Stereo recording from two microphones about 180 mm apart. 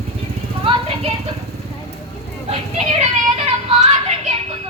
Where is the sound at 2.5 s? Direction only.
35° right (ahead or behind).